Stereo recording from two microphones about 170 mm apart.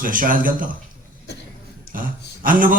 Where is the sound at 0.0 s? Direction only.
55° right (ahead or behind).